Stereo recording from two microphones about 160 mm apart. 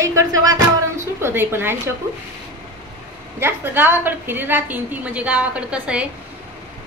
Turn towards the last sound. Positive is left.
turn(degrees=-5)  # may be behind; listen again after turning